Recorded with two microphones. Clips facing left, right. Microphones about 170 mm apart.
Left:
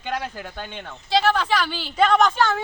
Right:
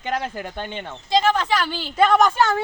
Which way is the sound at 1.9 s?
5° right (ahead or behind).